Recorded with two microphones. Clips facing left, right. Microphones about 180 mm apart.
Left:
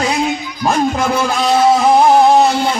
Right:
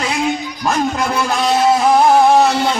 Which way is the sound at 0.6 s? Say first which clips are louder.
Left 3 dB; 25° left (ahead or behind).